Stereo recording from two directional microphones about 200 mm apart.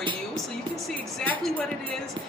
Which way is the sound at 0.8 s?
5° left (ahead or behind).